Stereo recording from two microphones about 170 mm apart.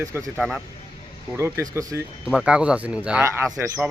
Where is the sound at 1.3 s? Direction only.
15° right (ahead or behind).